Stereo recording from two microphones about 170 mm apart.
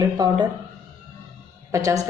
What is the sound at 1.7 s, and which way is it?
Speech, 20° right (ahead or behind).